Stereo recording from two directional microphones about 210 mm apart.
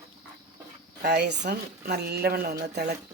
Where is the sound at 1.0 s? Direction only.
50° right (ahead or behind).